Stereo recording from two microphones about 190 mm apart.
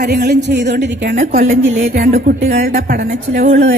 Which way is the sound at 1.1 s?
45° right (ahead or behind).